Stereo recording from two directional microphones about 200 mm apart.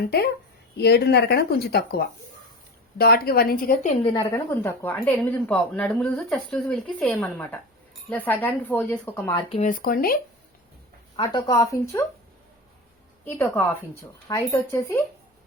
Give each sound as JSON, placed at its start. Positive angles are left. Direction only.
{"t": 0.8, "sound": "speech", "side_deg": 55}
{"t": 3.0, "sound": "speech", "side_deg": 50}
{"t": 4.0, "sound": "a woman's voice", "side_deg": 25}
{"t": 4.4, "sound": "speech", "side_deg": 10}
{"t": 9.5, "sound": "speech", "side_deg": 40}
{"t": 11.2, "sound": "speech", "side_deg": 20}
{"t": 13.2, "sound": "speech", "side_deg": 10}